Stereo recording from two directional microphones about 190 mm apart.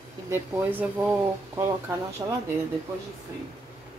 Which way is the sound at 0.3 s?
10° right (ahead or behind).